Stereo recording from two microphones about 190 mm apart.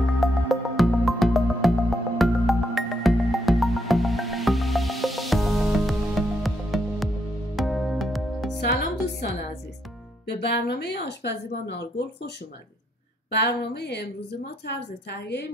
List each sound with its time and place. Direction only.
0.2 s music: centre (ahead or behind)
8.6 s music: 65° left (ahead or behind)
10.2 s speech: 60° left (ahead or behind)
13.3 s speech: 60° left (ahead or behind)